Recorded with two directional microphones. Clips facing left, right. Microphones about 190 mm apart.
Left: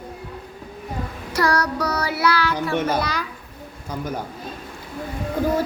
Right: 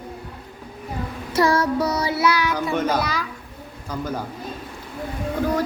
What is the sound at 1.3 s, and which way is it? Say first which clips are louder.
Child singing: right 3 dB; 25° right (ahead or behind).